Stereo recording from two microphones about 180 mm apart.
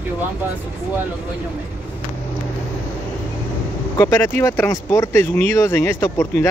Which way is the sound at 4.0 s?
15° left (ahead or behind).